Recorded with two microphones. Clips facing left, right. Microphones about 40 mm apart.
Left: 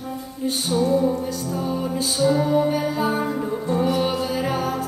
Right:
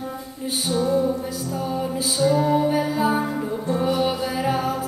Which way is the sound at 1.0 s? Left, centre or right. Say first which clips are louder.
Left 1 dB; centre.